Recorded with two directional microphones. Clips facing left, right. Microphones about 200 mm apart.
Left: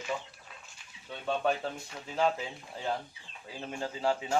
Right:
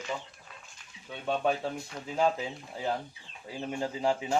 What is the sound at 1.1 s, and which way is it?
Speech, 5° right (ahead or behind).